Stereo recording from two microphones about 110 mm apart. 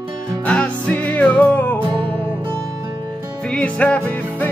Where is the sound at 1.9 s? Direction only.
50° right (ahead or behind).